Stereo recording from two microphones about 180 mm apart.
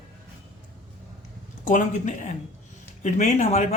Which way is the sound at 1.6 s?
45° left (ahead or behind).